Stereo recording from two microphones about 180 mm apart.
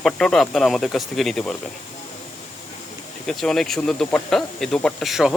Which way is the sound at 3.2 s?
Centre (ahead or behind).